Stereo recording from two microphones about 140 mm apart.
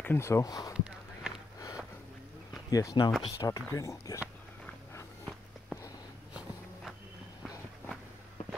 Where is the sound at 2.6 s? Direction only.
25° left (ahead or behind).